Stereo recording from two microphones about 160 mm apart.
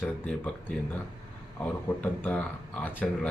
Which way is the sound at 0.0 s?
10° left (ahead or behind).